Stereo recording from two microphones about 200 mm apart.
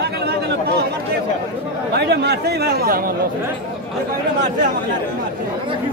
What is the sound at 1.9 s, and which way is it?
Speech, 55° right (ahead or behind).